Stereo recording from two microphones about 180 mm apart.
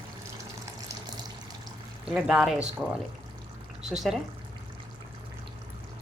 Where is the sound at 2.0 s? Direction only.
5° right (ahead or behind).